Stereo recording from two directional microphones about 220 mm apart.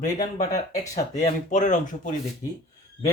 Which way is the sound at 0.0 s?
35° left (ahead or behind).